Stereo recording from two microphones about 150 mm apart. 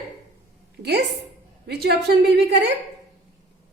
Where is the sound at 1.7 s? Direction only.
90° right.